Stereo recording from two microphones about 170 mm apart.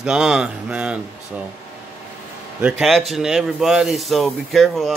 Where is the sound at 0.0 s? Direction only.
5° right (ahead or behind).